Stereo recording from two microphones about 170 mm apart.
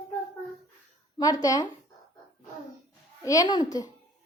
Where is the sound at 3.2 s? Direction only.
20° left (ahead or behind).